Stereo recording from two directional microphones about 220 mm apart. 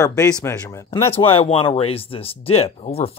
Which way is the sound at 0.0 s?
15° left (ahead or behind).